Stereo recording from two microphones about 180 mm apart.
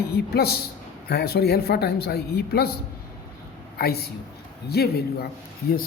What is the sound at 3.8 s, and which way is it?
A man's voice, 60° left (ahead or behind).